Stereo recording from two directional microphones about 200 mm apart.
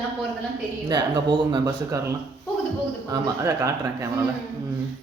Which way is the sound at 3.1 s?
15° right (ahead or behind).